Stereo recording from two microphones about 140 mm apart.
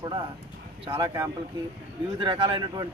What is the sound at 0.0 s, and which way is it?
A man's voice, 35° right (ahead or behind).